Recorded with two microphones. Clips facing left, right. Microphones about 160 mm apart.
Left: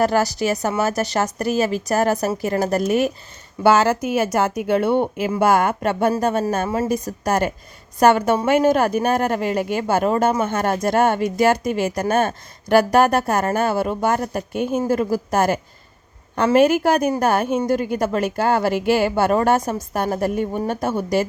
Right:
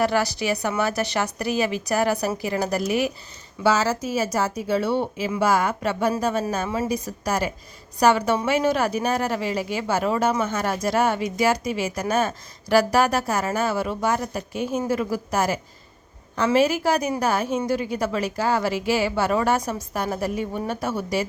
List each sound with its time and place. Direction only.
0.0 s speech: 45° left (ahead or behind)
3.6 s speech: 55° left (ahead or behind)